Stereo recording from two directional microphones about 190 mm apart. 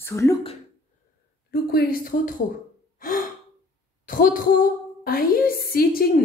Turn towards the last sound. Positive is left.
turn(degrees=55)  # may be behind; listen again after turning